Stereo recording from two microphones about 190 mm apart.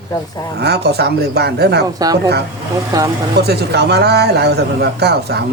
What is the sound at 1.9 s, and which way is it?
A woman's voice, 20° right (ahead or behind).